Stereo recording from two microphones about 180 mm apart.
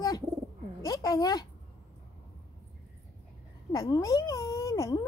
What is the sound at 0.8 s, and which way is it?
Speech, 20° left (ahead or behind).